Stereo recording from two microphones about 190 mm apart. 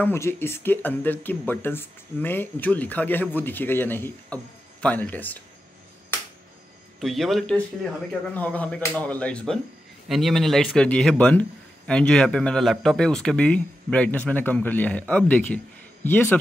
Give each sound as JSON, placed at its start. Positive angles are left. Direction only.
{"t": 0.0, "sound": "a man's voice", "side_deg": 10}
{"t": 7.0, "sound": "a man's voice", "side_deg": 0}